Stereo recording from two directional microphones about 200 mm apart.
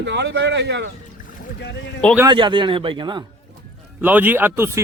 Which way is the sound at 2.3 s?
25° right (ahead or behind).